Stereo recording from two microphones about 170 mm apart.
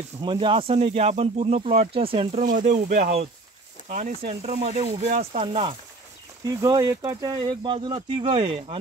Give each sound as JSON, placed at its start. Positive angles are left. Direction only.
{"t": 0.2, "sound": "speech", "side_deg": -30}
{"t": 2.4, "sound": "speech", "side_deg": -50}
{"t": 4.3, "sound": "speech", "side_deg": -40}
{"t": 6.4, "sound": "speech", "side_deg": -20}